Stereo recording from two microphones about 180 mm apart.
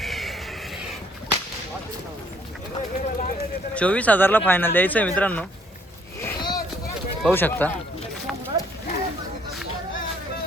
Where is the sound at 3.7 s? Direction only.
5° left (ahead or behind).